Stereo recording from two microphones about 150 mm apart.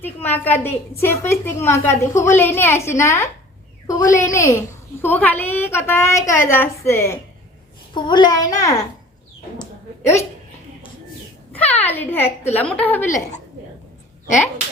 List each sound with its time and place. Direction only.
0.0 s a woman's voice: 10° left (ahead or behind)
7.9 s a child's voice: 30° left (ahead or behind)
11.5 s a woman's voice: 10° left (ahead or behind)